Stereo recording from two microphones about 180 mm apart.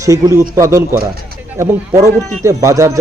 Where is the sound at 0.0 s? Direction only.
15° right (ahead or behind).